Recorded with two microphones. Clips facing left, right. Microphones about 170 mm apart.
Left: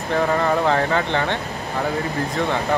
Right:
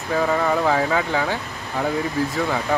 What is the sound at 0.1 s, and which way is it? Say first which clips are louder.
Speech: left 1 dB; 5° right (ahead or behind).